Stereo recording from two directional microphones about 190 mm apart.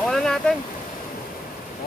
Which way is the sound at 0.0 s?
Centre (ahead or behind).